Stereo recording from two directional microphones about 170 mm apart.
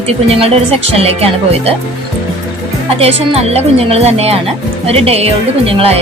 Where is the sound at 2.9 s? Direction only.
35° right (ahead or behind).